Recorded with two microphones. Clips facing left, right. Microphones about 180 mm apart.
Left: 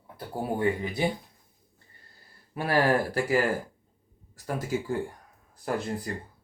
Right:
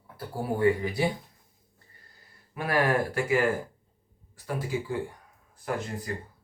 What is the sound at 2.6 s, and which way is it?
Speech, 30° left (ahead or behind).